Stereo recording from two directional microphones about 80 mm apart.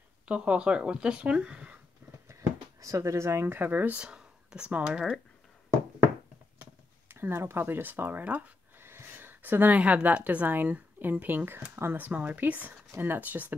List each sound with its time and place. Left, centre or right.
0.3 s speech: centre
2.8 s speech: right
4.0 s speech: centre
6.6 s a sound: right
8.8 s a woman's voice: right